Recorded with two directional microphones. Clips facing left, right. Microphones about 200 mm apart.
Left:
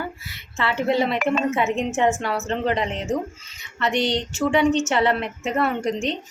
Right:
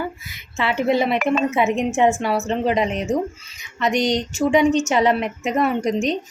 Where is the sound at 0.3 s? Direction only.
15° right (ahead or behind).